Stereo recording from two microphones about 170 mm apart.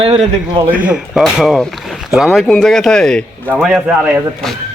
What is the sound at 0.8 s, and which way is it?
Speech, 5° right (ahead or behind).